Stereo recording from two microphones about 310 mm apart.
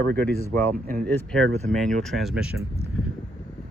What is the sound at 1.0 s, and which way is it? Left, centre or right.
Speech, centre.